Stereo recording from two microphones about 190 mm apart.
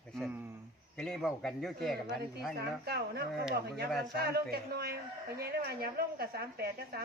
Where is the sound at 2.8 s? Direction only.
55° right (ahead or behind).